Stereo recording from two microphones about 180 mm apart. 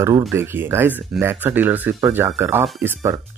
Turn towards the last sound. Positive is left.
turn(degrees=-15)  # may be behind; listen again after turning